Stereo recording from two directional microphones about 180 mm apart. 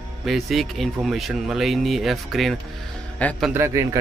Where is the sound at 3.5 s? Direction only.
15° right (ahead or behind).